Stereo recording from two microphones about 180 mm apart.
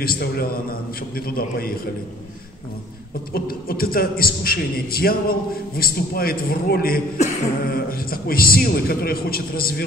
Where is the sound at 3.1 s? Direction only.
55° left (ahead or behind).